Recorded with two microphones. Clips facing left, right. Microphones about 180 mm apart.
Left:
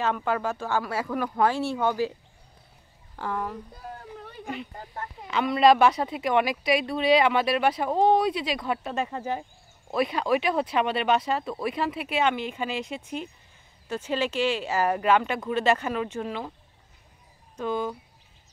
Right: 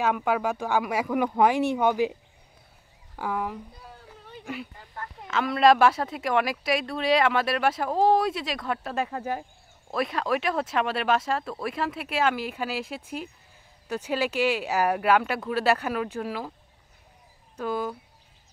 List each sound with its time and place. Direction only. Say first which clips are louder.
0.0 s speech: right 2 dB; 10° right (ahead or behind)
3.2 s speech: right 1 dB; 10° right (ahead or behind)
3.8 s a sound: left 7 dB; 55° left (ahead or behind)
5.2 s speech: left 1 dB; centre (ahead or behind)
17.6 s speech: left 1 dB; 5° right (ahead or behind)